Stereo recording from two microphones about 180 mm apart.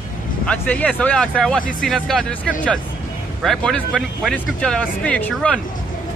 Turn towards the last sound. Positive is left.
turn(degrees=5)  # may be behind; listen again after turning